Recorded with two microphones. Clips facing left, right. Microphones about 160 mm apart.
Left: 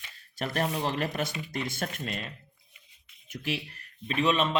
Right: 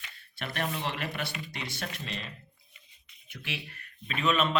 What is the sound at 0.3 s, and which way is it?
A man's voice, 40° left (ahead or behind).